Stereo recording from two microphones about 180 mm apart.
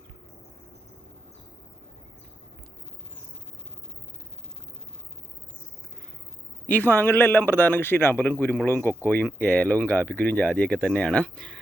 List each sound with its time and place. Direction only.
6.7 s a man's voice: 10° left (ahead or behind)